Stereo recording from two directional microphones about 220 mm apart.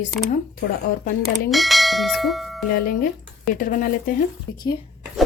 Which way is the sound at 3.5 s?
40° left (ahead or behind).